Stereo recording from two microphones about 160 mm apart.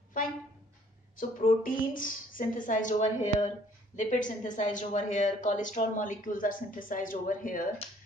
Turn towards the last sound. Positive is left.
turn(degrees=55)  # may be behind; listen again after turning